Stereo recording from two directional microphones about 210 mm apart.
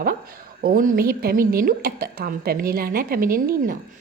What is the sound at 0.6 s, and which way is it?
A woman's voice, 40° right (ahead or behind).